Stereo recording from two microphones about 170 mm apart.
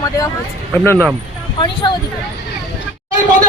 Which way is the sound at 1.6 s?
25° left (ahead or behind).